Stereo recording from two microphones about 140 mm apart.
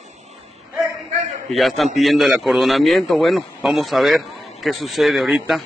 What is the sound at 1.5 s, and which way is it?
A man's voice, centre (ahead or behind).